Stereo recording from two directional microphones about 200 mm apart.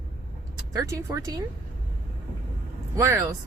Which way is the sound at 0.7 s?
15° right (ahead or behind).